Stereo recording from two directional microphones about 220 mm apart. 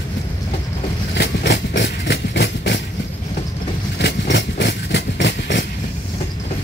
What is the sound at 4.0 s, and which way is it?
Vehicle, 50° left (ahead or behind).